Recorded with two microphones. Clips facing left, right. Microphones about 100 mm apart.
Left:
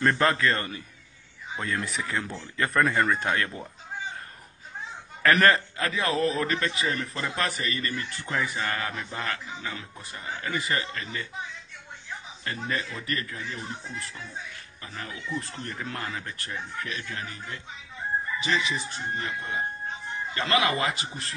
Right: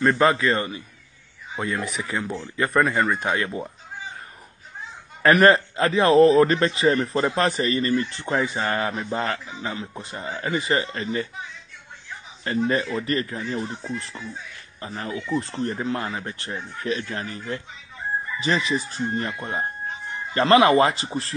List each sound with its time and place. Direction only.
0.0 s speech: 10° right (ahead or behind)
5.2 s a man's voice: 20° right (ahead or behind)
12.4 s a man's voice: 30° right (ahead or behind)